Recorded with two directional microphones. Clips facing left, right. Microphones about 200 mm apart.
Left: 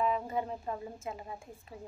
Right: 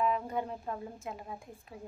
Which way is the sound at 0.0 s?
Centre (ahead or behind).